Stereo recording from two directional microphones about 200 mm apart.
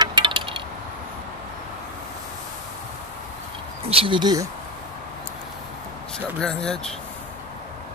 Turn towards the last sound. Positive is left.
turn(degrees=5)  # may be behind; listen again after turning